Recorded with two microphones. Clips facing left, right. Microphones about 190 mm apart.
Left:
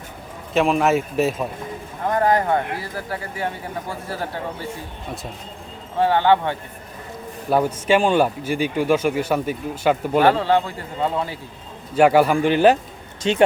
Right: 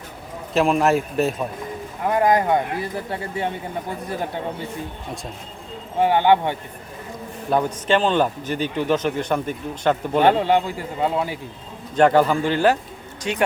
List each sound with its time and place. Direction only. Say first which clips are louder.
0.5 s a man's voice: even; centre (ahead or behind)
2.0 s speech: right 1 dB; 15° right (ahead or behind)
6.0 s a man's voice: even; 15° right (ahead or behind)
7.5 s a man's voice: left 2 dB; 10° left (ahead or behind)
10.2 s a man's voice: right 1 dB; 20° right (ahead or behind)
11.9 s a man's voice: left 1 dB; 10° left (ahead or behind); by 13.4 s 25° left (ahead or behind)